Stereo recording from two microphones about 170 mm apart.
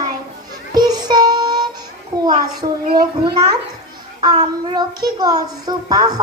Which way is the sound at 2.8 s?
60° right (ahead or behind).